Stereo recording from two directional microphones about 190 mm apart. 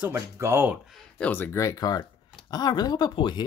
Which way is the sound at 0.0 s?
15° right (ahead or behind).